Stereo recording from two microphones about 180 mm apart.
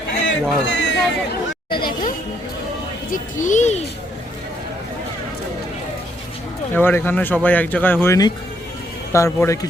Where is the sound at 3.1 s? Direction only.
45° left (ahead or behind).